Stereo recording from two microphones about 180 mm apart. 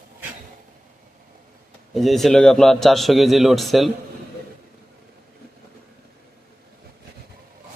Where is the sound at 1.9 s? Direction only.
Centre (ahead or behind).